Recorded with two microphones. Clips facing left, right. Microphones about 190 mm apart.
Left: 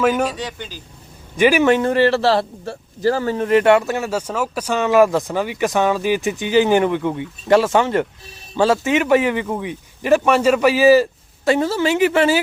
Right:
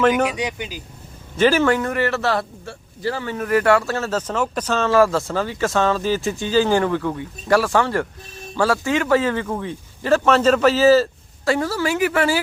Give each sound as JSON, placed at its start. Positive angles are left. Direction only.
{"t": 0.3, "sound": "speech", "side_deg": -10}
{"t": 1.4, "sound": "a man's voice", "side_deg": 15}
{"t": 3.3, "sound": "speech", "side_deg": 25}